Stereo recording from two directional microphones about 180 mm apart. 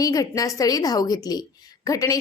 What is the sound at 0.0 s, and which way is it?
A woman's voice, 20° left (ahead or behind).